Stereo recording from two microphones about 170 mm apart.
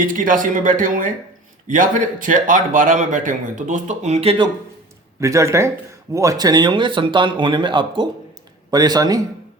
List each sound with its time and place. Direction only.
0.0 s a man's voice: 50° right (ahead or behind); by 4.4 s 35° right (ahead or behind)
5.2 s speech: 15° right (ahead or behind)